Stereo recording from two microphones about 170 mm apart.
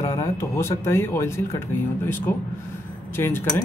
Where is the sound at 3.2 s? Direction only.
15° left (ahead or behind).